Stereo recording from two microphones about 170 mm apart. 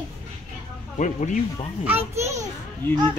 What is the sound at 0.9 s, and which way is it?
Speech, 45° left (ahead or behind).